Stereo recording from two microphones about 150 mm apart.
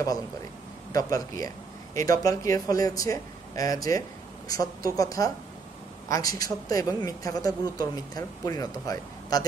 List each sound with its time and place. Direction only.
0.9 s speech: 25° left (ahead or behind)